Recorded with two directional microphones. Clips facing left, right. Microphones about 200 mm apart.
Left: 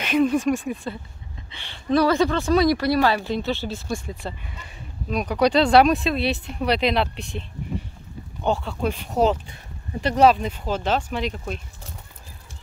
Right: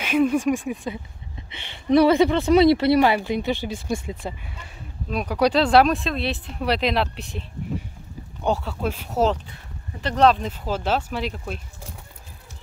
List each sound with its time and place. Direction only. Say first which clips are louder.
0.0 s a woman's voice: even; 10° right (ahead or behind)
3.2 s speech: right 1 dB; 10° right (ahead or behind)
8.5 s speech: left 1 dB; 5° right (ahead or behind)